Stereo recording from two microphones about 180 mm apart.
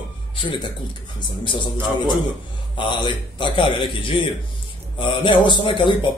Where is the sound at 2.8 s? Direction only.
25° left (ahead or behind).